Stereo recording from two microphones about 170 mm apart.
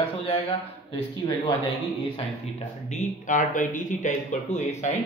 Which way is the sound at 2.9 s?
45° left (ahead or behind).